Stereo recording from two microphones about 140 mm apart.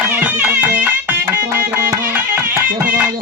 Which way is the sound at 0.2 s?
10° right (ahead or behind).